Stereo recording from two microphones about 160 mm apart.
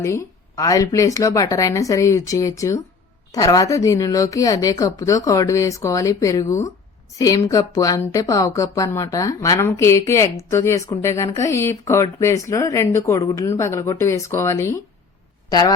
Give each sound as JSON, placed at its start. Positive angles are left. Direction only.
{"t": 0.0, "sound": "speech", "side_deg": 20}